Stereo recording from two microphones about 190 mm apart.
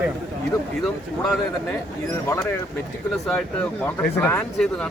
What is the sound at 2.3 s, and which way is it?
Speech, 15° left (ahead or behind).